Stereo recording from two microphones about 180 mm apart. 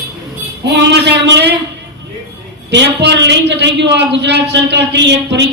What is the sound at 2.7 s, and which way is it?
A man's voice, 75° right (ahead or behind).